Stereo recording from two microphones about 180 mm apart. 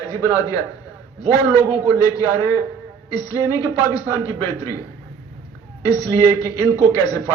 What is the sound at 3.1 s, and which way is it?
A man's voice, 20° left (ahead or behind).